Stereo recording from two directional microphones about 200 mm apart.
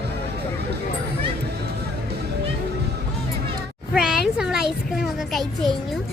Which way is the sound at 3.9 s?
5° right (ahead or behind).